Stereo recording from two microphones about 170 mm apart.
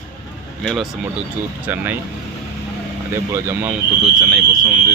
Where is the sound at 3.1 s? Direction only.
15° right (ahead or behind).